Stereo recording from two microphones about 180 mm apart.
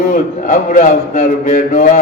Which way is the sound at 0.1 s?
40° left (ahead or behind).